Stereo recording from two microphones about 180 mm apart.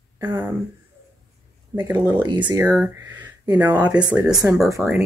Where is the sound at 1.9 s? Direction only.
10° right (ahead or behind).